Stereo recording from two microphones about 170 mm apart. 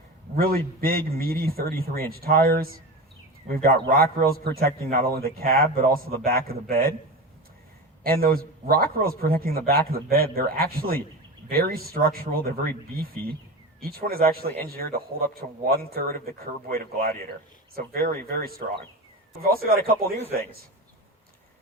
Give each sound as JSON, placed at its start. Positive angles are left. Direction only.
{"t": 0.8, "sound": "a man's voice", "side_deg": -60}
{"t": 8.0, "sound": "a man's voice", "side_deg": -60}
{"t": 13.7, "sound": "a man's voice", "side_deg": -60}